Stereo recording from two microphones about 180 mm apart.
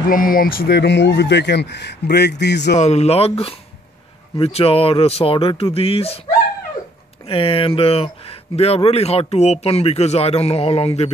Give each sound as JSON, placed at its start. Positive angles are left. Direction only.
{"t": 0.1, "sound": "speech", "side_deg": 50}
{"t": 2.8, "sound": "speech", "side_deg": 35}
{"t": 7.2, "sound": "speech", "side_deg": 30}